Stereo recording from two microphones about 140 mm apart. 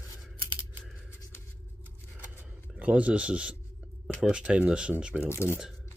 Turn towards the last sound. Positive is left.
turn(degrees=-5)  # may be behind; listen again after turning